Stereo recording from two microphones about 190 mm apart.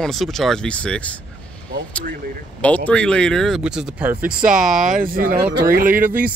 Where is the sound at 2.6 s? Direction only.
5° left (ahead or behind).